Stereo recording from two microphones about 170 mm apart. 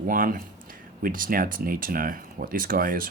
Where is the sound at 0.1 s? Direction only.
55° right (ahead or behind).